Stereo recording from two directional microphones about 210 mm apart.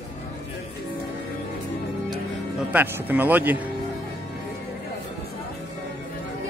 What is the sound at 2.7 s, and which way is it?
Speech, 10° right (ahead or behind).